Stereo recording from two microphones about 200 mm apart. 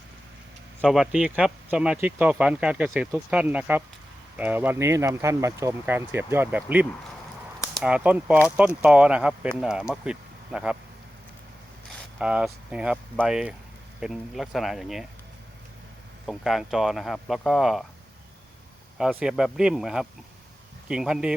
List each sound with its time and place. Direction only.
0.8 s speech: 5° right (ahead or behind)
12.2 s speech: 5° right (ahead or behind)
16.2 s speech: centre (ahead or behind)
19.2 s speech: 5° right (ahead or behind)